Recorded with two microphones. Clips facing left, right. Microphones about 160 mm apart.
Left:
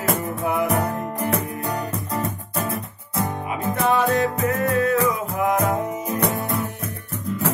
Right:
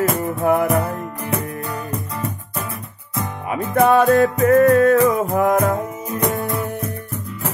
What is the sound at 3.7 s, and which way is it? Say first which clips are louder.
Music: right 7 dB; 50° right (ahead or behind).